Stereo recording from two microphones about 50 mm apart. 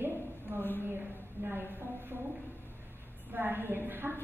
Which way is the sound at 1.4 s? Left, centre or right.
Right.